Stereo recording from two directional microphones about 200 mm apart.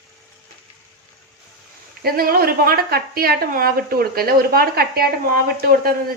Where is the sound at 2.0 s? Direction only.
50° right (ahead or behind).